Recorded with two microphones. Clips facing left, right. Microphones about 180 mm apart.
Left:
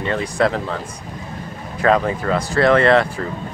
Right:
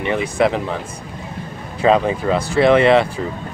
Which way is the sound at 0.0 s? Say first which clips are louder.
Right 2 dB; 20° right (ahead or behind).